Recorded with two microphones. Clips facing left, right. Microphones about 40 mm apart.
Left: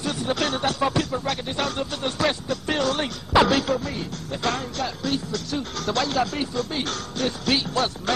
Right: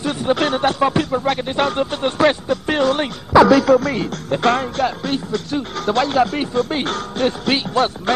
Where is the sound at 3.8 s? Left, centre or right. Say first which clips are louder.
Right 9 dB; right.